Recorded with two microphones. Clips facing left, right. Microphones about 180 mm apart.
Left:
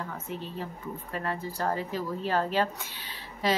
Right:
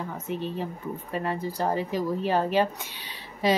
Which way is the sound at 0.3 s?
15° right (ahead or behind).